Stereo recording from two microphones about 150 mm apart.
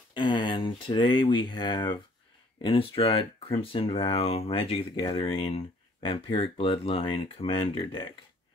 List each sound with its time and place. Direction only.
0.1 s speech: 30° left (ahead or behind)